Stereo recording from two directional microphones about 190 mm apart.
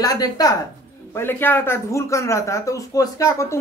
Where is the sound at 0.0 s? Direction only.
20° left (ahead or behind).